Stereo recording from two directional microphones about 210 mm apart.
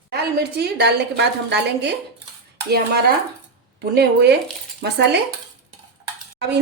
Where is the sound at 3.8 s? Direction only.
50° right (ahead or behind).